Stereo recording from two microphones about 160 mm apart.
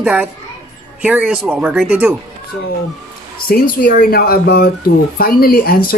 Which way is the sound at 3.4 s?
65° left (ahead or behind).